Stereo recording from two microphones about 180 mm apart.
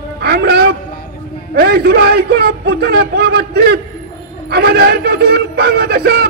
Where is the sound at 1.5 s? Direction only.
60° right (ahead or behind).